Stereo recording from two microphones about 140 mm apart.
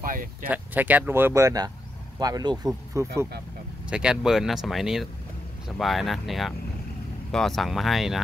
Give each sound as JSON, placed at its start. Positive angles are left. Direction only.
{"t": 0.0, "sound": "speech", "side_deg": -80}
{"t": 0.5, "sound": "speech", "side_deg": -10}
{"t": 3.9, "sound": "speech", "side_deg": -5}